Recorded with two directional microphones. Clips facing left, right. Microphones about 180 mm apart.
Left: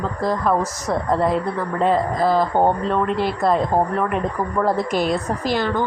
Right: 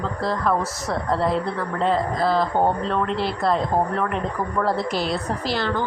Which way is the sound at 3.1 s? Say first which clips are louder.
Left 3 dB; 45° left (ahead or behind).